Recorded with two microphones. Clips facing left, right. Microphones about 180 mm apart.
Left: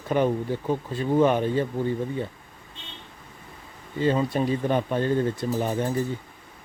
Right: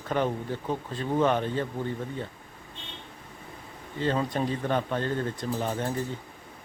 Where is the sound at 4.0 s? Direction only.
10° left (ahead or behind).